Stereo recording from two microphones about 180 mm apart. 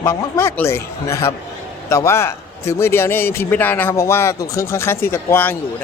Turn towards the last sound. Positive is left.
turn(degrees=10)  # may be behind; listen again after turning